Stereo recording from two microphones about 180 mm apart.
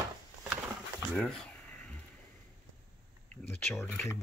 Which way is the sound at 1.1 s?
5° left (ahead or behind).